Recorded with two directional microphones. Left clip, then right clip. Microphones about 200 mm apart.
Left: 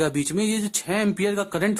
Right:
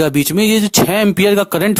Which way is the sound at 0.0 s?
45° right (ahead or behind).